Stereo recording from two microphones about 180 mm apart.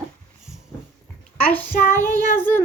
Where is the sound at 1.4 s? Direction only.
10° left (ahead or behind).